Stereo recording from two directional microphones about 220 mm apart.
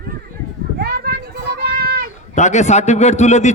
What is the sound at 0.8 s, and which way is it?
Children playing, 45° right (ahead or behind).